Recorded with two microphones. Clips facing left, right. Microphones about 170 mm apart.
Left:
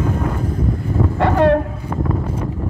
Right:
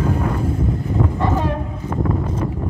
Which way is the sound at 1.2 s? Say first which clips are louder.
Left 11 dB; 70° left (ahead or behind).